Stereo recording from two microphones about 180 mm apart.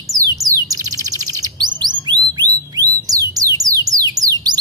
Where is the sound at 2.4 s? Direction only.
20° right (ahead or behind).